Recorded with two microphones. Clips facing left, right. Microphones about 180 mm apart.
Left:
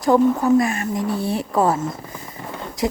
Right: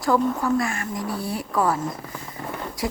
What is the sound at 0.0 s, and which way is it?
Speech, 20° left (ahead or behind).